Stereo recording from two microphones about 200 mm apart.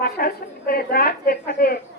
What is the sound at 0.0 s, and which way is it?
A woman's voice, 50° left (ahead or behind).